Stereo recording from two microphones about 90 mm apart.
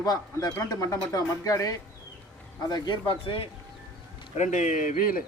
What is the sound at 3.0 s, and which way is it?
Speech, 85° left.